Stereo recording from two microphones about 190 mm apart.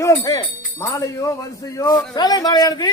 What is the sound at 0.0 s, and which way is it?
A man's voice, 15° left (ahead or behind).